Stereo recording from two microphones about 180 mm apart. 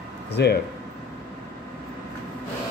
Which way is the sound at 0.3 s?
65° left (ahead or behind).